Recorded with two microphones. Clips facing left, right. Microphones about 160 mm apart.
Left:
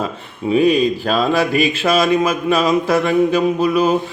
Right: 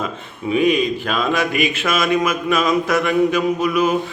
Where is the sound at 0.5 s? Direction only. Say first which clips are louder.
Left 3 dB; 35° left (ahead or behind).